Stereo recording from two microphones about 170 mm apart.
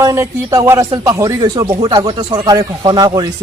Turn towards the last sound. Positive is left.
turn(degrees=-25)  # may be behind; listen again after turning